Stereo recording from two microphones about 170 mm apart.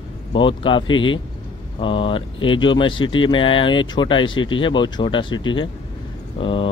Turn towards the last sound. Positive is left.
turn(degrees=30)  # may be behind; listen again after turning